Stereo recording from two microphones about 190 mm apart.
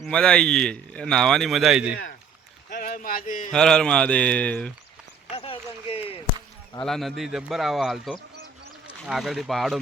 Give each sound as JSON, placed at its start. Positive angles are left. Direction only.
{"t": 0.0, "sound": "speech", "side_deg": 5}
{"t": 2.6, "sound": "a sound", "side_deg": 45}
{"t": 3.5, "sound": "speech", "side_deg": 5}
{"t": 5.3, "sound": "run", "side_deg": 30}
{"t": 6.8, "sound": "speech", "side_deg": 0}